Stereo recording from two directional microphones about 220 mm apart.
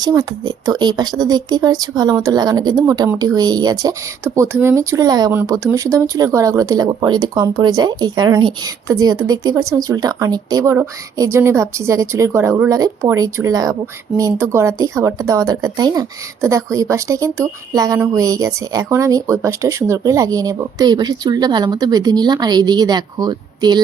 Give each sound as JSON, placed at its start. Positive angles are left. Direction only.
{"t": 0.0, "sound": "speech", "side_deg": -15}